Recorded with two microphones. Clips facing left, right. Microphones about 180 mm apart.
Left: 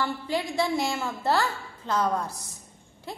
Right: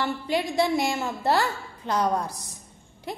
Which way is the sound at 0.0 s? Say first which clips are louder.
Right 2 dB; 15° right (ahead or behind).